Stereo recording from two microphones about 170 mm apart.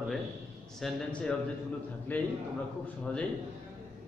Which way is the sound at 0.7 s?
Centre (ahead or behind).